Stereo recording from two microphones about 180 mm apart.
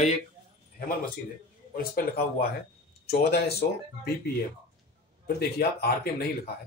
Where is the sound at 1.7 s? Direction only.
55° left (ahead or behind).